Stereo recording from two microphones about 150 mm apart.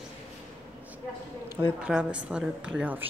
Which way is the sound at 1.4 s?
25° left (ahead or behind).